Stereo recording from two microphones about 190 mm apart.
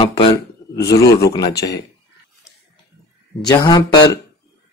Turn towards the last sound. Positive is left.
turn(degrees=20)  # may be behind; listen again after turning